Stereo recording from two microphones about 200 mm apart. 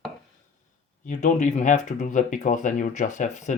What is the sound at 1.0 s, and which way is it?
Speech, 35° left (ahead or behind).